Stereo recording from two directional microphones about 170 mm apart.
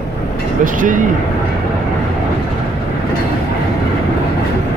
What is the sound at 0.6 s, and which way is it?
Speech, 50° right (ahead or behind).